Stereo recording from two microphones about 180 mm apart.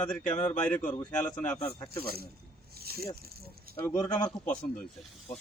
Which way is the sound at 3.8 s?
10° left (ahead or behind).